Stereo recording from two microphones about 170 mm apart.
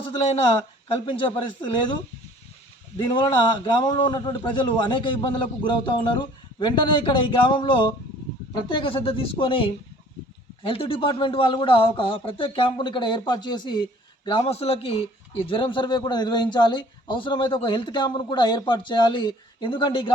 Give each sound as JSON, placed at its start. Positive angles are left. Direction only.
{"t": 0.1, "sound": "a woman's voice", "side_deg": 35}
{"t": 3.1, "sound": "a man's voice", "side_deg": 30}